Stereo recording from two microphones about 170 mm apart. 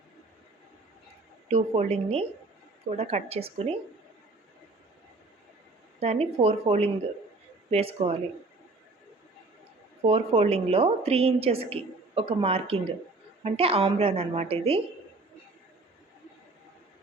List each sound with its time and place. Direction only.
1.5 s a woman's voice: 35° right (ahead or behind)
6.0 s a woman's voice: 35° right (ahead or behind)
10.1 s a woman's voice: 35° right (ahead or behind)